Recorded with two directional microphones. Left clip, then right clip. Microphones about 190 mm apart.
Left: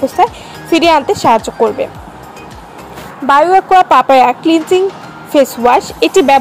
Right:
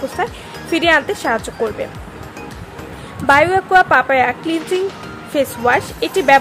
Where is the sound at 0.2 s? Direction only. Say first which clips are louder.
Left 10 dB; 20° left (ahead or behind).